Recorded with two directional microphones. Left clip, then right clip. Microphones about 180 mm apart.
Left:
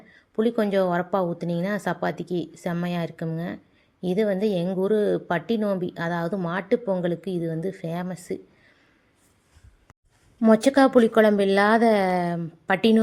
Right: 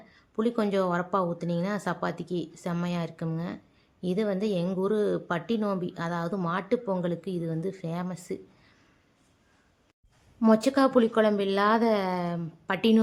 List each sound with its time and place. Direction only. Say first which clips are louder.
0.1 s speech: left 5 dB; 15° left (ahead or behind)
10.4 s a woman's voice: left 5 dB; 20° left (ahead or behind)